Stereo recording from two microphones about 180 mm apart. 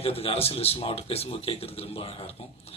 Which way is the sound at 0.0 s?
30° left (ahead or behind).